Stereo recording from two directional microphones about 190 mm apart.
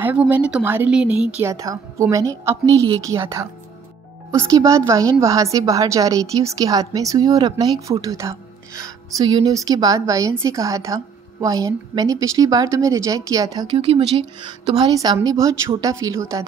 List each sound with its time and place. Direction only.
0.0 s a woman's voice: 10° right (ahead or behind)
13.7 s a woman's voice: 30° right (ahead or behind)